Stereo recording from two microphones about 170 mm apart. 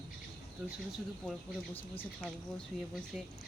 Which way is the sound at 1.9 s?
5° left (ahead or behind).